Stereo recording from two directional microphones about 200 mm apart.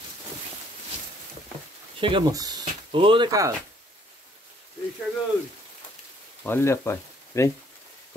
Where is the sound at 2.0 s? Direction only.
25° right (ahead or behind).